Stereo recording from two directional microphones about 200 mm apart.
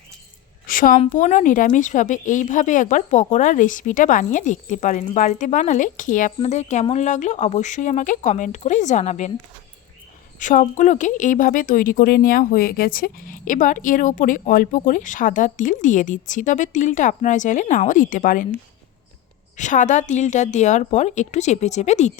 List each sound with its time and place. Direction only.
0.7 s speech: 45° left (ahead or behind)
10.4 s speech: 40° left (ahead or behind)
19.5 s speech: 40° left (ahead or behind)